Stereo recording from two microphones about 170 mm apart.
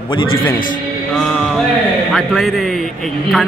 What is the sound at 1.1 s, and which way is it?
Music, centre (ahead or behind).